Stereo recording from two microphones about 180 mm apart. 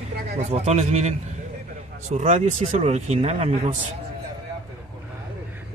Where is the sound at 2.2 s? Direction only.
40° right (ahead or behind).